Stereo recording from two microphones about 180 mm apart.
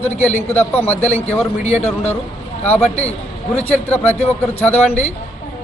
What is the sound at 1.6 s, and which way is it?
A man's voice, 40° left (ahead or behind).